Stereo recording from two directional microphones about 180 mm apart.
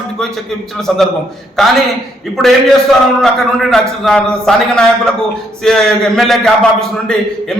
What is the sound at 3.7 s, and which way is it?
A man's voice, 5° left (ahead or behind).